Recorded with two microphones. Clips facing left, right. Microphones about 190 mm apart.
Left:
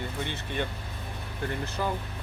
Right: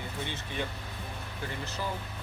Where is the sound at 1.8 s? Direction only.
55° left (ahead or behind).